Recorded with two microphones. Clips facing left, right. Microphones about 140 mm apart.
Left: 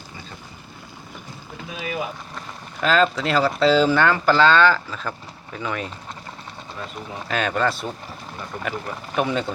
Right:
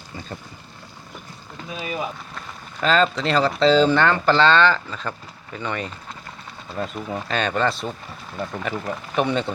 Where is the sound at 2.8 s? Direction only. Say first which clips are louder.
Even; 5° left (ahead or behind).